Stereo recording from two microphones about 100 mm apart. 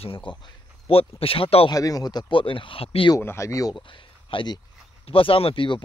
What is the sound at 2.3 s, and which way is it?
Speech, 60° left (ahead or behind).